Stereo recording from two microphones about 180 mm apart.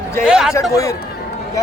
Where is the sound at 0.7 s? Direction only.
20° left (ahead or behind).